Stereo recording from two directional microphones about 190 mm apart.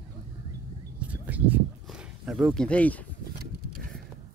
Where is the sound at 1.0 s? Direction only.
10° right (ahead or behind).